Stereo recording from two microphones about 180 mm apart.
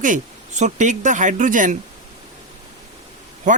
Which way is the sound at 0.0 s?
45° right (ahead or behind).